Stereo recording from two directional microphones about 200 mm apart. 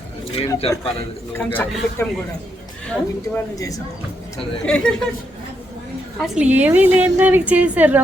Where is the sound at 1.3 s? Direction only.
10° left (ahead or behind).